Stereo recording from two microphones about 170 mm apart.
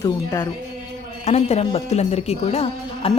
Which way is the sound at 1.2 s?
40° left (ahead or behind).